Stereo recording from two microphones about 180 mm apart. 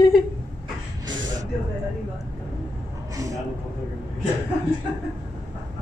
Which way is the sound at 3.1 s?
20° right (ahead or behind).